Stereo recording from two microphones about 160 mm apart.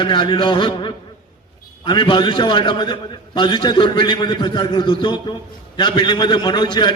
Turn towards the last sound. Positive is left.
turn(degrees=30)  # may be behind; listen again after turning